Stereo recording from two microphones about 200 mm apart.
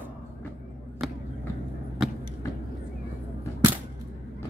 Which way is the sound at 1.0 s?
Centre (ahead or behind).